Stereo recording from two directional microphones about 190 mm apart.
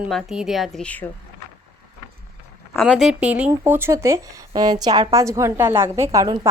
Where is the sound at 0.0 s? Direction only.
Centre (ahead or behind).